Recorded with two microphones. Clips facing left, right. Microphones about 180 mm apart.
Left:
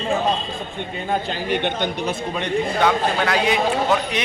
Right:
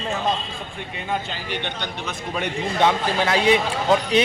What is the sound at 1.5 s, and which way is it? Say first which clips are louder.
Speech: left 8 dB; 50° left (ahead or behind).